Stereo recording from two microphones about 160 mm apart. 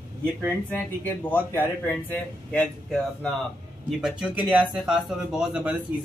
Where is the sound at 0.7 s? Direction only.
10° left (ahead or behind).